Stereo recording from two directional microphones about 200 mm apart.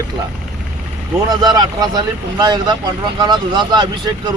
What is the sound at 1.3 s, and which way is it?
Speech, 20° right (ahead or behind).